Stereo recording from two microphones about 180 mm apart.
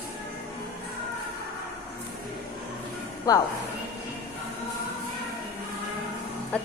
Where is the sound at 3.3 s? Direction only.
20° left (ahead or behind).